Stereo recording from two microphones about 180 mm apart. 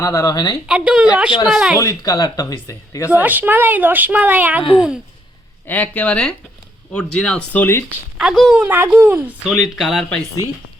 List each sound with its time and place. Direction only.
0.0 s speech: 20° left (ahead or behind)
0.7 s speech: 5° right (ahead or behind)
1.8 s speech: 20° left (ahead or behind)
3.1 s speech: 10° right (ahead or behind)
5.6 s speech: 10° left (ahead or behind)
8.2 s speech: centre (ahead or behind)